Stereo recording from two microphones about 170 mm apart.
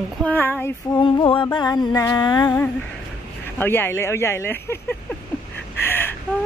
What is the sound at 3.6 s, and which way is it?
Speech, 15° left (ahead or behind).